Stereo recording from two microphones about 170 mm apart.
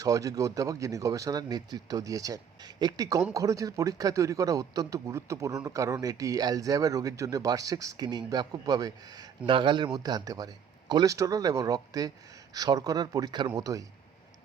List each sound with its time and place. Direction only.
0.0 s speech: 20° right (ahead or behind)